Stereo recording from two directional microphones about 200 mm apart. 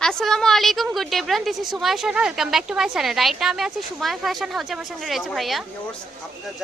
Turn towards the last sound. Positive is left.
turn(degrees=0)  # may be behind; listen again after turning